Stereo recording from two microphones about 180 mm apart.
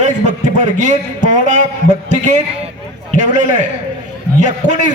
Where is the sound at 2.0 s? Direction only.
40° right (ahead or behind).